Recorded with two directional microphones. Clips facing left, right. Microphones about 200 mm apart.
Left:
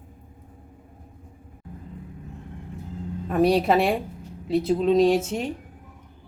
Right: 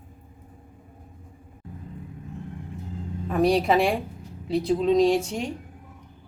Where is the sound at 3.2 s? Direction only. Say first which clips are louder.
Left 1 dB; 5° left (ahead or behind).